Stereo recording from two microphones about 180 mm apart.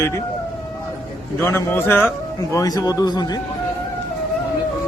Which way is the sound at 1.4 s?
15° left (ahead or behind).